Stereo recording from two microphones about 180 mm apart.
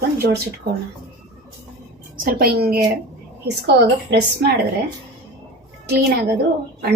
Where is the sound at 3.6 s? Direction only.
65° right (ahead or behind).